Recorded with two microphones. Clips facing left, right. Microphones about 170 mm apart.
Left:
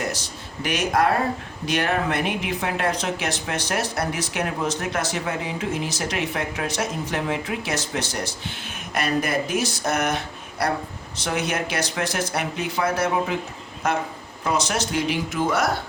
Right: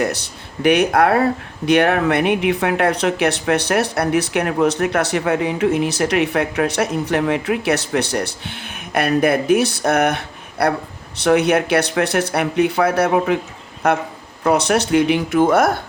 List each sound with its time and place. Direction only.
0.0 s speech: 60° right (ahead or behind)